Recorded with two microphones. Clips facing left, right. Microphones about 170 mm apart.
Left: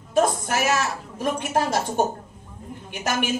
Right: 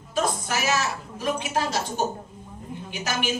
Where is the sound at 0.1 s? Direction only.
50° left (ahead or behind).